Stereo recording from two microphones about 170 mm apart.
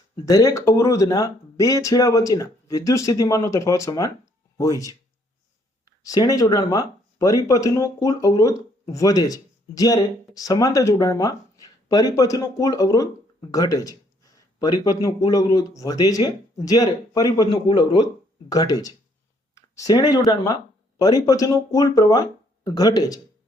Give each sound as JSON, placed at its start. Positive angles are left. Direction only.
{"t": 0.3, "sound": "speech", "side_deg": 20}
{"t": 6.1, "sound": "speech", "side_deg": 20}